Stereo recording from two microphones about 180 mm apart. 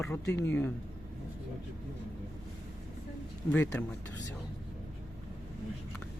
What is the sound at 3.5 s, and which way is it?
Speech, 10° left (ahead or behind).